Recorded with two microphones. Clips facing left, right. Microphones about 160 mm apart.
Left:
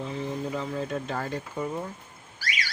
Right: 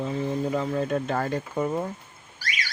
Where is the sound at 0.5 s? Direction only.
50° right (ahead or behind).